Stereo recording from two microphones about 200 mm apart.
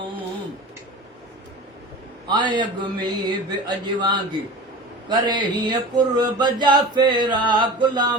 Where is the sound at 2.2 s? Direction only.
20° right (ahead or behind).